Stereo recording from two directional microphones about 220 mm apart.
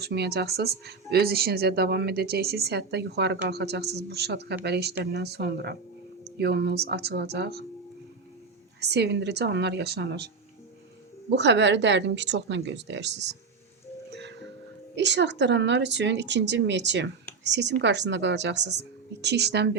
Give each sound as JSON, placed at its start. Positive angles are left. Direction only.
{"t": 0.0, "sound": "speech", "side_deg": -50}
{"t": 8.8, "sound": "speech", "side_deg": -50}
{"t": 11.3, "sound": "speech", "side_deg": -50}
{"t": 14.9, "sound": "speech", "side_deg": -55}